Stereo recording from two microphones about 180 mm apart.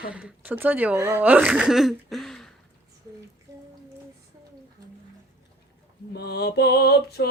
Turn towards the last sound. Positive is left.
turn(degrees=65)  # may be behind; listen again after turning